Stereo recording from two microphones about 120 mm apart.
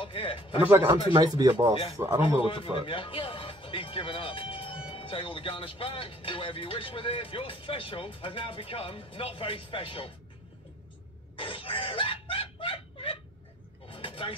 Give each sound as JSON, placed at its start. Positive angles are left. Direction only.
{"t": 0.0, "sound": "speech", "side_deg": 50}
{"t": 0.6, "sound": "speech", "side_deg": -15}
{"t": 1.1, "sound": "speech", "side_deg": -35}
{"t": 2.4, "sound": "speech", "side_deg": 45}
{"t": 11.3, "sound": "a sound", "side_deg": 50}
{"t": 13.8, "sound": "vehicle", "side_deg": 50}